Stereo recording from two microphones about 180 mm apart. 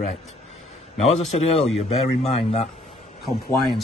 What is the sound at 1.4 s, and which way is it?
Speech, 35° left (ahead or behind).